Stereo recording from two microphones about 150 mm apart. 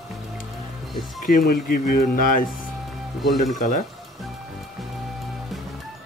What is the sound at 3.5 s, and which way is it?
Speech, 70° left (ahead or behind).